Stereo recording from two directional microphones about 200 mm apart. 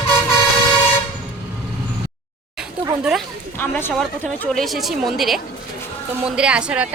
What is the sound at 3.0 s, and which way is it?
Speech, centre (ahead or behind).